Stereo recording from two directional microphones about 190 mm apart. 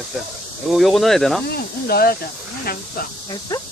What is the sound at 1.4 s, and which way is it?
Speech, 55° left (ahead or behind).